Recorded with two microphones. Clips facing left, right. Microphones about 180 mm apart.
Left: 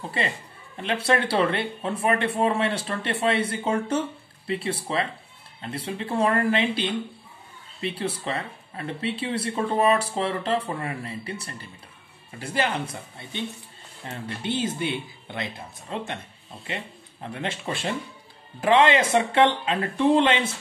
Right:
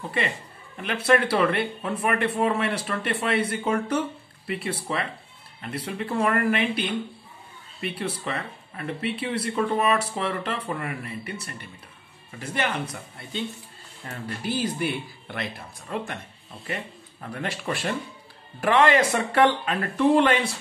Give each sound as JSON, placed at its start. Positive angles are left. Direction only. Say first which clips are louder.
{"t": 0.2, "sound": "speech", "louder": "right 1 dB", "side_deg": 30}
{"t": 8.0, "sound": "speech", "louder": "left 1 dB", "side_deg": 30}
{"t": 17.4, "sound": "speech", "louder": "right 1 dB", "side_deg": 25}